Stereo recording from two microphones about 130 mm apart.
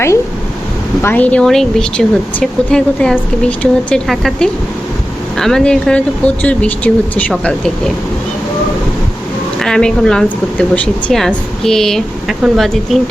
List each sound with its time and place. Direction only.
1.0 s speech: 10° left (ahead or behind)
9.6 s speech: 5° left (ahead or behind)